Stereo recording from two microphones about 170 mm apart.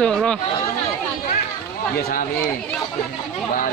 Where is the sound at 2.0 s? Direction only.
55° left (ahead or behind).